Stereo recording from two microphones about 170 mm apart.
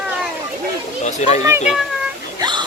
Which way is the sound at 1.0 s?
45° left (ahead or behind).